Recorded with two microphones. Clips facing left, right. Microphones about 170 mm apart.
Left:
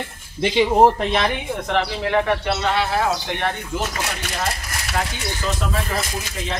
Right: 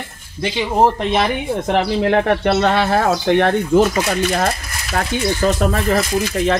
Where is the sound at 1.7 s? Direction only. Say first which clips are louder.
Right 5 dB; 55° right (ahead or behind).